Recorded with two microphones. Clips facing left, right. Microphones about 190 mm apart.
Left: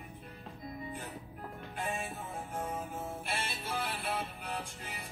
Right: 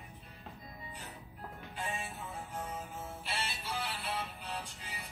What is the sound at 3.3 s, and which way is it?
Music, 50° left (ahead or behind).